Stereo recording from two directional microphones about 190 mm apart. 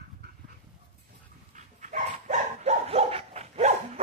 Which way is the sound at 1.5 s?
40° right (ahead or behind).